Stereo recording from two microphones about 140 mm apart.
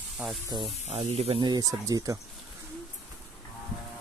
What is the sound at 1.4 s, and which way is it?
Speech, 30° right (ahead or behind).